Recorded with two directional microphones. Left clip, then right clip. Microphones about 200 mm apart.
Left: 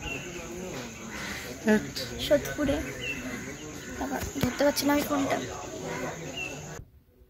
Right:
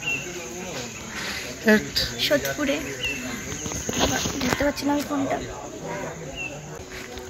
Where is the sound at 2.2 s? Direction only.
20° left (ahead or behind).